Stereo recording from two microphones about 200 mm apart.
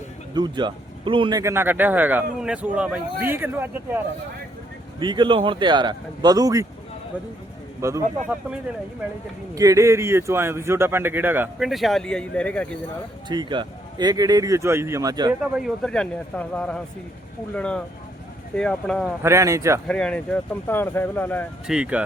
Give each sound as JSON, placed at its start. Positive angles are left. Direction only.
{"t": 0.3, "sound": "a man's voice", "side_deg": -20}
{"t": 4.9, "sound": "speech", "side_deg": -25}
{"t": 7.8, "sound": "a man's voice", "side_deg": -15}
{"t": 9.6, "sound": "a man's voice", "side_deg": -15}
{"t": 13.2, "sound": "speech", "side_deg": -20}
{"t": 15.4, "sound": "speech", "side_deg": -5}
{"t": 19.2, "sound": "a man's voice", "side_deg": -15}
{"t": 19.9, "sound": "speech", "side_deg": 5}
{"t": 21.7, "sound": "speech", "side_deg": -5}